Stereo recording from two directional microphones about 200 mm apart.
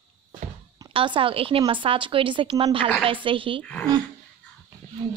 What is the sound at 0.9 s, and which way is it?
A woman's voice, 25° right (ahead or behind).